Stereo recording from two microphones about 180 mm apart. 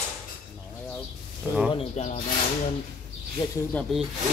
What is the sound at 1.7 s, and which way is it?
Speech, 35° left (ahead or behind).